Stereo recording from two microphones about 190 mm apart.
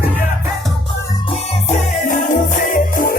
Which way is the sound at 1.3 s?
40° left (ahead or behind).